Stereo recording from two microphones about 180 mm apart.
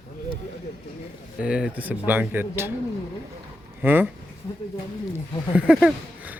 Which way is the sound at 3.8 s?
10° right (ahead or behind).